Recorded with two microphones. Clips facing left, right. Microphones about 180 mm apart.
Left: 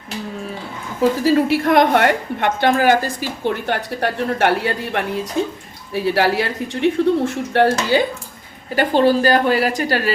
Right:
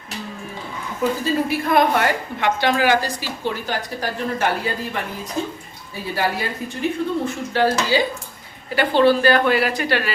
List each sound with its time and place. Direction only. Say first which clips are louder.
1.2 s a woman's voice: left 6 dB; 75° left (ahead or behind); by 8.0 s 60° left (ahead or behind)
8.7 s a woman's voice: left 1 dB; 40° left (ahead or behind)